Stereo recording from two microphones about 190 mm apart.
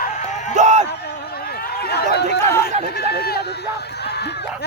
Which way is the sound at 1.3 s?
55° left (ahead or behind).